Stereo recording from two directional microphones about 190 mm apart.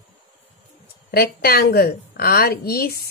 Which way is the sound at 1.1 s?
55° left (ahead or behind).